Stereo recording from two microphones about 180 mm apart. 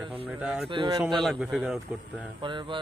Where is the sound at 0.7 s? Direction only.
25° right (ahead or behind).